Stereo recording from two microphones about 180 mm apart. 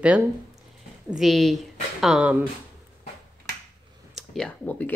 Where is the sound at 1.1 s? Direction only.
Centre (ahead or behind).